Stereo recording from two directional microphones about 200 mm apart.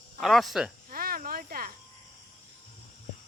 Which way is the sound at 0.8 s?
45° right (ahead or behind).